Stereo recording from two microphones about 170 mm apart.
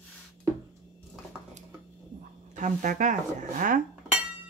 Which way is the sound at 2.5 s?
45° right (ahead or behind).